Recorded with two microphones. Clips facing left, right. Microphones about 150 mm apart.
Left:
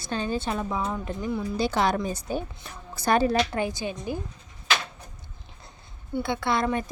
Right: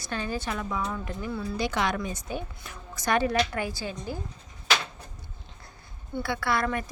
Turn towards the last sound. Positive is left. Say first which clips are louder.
# left 2 dB
turn(degrees=20)  # may be behind; listen again after turning